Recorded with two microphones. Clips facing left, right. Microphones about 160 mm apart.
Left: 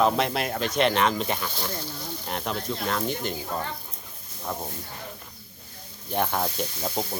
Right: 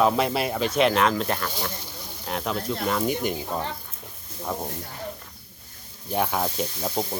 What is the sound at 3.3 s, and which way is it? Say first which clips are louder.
Speech: right 2 dB; 20° right (ahead or behind).